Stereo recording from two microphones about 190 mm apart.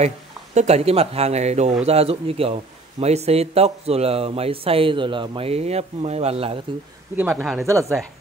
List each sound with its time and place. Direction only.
0.6 s speech: 35° right (ahead or behind)
7.2 s speech: 10° right (ahead or behind)